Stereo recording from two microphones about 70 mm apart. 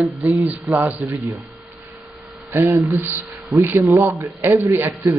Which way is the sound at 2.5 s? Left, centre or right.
Right.